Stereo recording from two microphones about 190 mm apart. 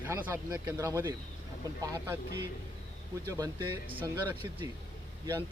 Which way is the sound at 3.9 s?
10° right (ahead or behind).